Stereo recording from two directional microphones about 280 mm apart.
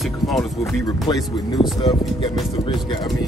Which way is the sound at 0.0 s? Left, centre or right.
Centre.